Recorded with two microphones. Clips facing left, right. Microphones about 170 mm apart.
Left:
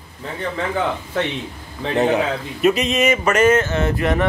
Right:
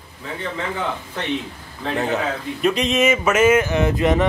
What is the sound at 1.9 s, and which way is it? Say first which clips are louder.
Speech: left 5 dB; 20° left (ahead or behind).